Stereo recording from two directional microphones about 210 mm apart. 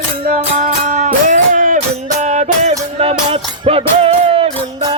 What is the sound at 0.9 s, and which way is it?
Music, 35° right (ahead or behind).